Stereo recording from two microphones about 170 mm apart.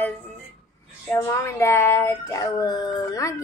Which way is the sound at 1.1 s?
15° left (ahead or behind).